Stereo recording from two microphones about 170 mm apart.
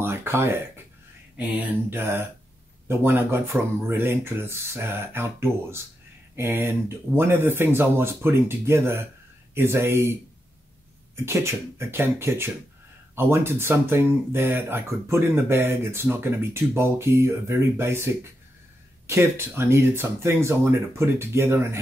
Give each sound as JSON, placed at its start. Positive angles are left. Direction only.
{"t": 0.0, "sound": "speech", "side_deg": -15}
{"t": 11.2, "sound": "speech", "side_deg": -15}